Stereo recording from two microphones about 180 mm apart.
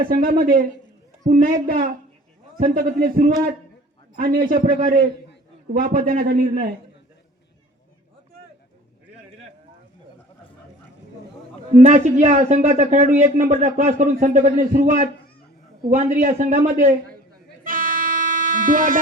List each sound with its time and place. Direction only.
0.0 s a man's voice: 55° right (ahead or behind)
11.7 s a man's voice: 40° right (ahead or behind)
16.7 s music: 50° right (ahead or behind)